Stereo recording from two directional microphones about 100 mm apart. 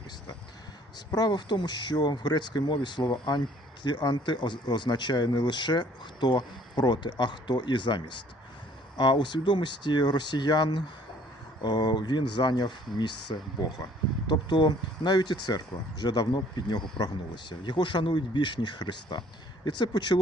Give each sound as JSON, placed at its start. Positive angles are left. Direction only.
{"t": 0.9, "sound": "speech", "side_deg": 45}